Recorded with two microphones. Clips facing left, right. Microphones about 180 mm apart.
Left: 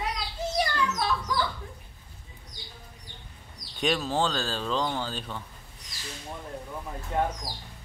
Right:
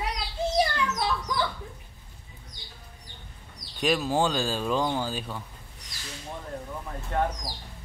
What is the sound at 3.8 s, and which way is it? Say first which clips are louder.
Speech: right 2 dB; 5° right (ahead or behind).